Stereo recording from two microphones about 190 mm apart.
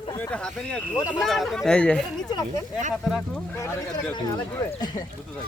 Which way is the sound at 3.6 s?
20° left (ahead or behind).